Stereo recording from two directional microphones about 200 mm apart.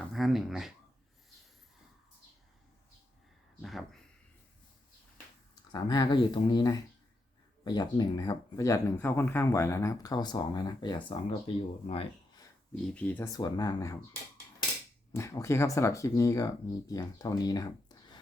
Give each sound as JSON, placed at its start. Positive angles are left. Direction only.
{"t": 0.1, "sound": "speech", "side_deg": 0}
{"t": 3.6, "sound": "a sound", "side_deg": 0}
{"t": 5.7, "sound": "speech", "side_deg": 20}
{"t": 12.7, "sound": "speech", "side_deg": 5}
{"t": 15.1, "sound": "speech", "side_deg": 15}